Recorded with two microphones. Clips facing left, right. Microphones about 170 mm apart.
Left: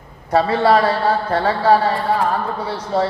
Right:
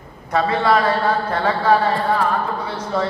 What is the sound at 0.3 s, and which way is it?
A man's voice, 35° left (ahead or behind).